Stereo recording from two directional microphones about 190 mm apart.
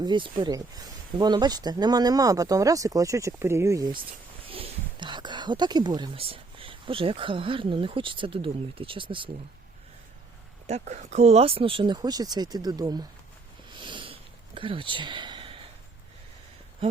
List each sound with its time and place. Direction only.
0.0 s speech: 25° right (ahead or behind)
4.4 s speech: 30° right (ahead or behind)
10.7 s speech: 35° right (ahead or behind); by 13.1 s 20° right (ahead or behind)
13.7 s sniff: 25° right (ahead or behind)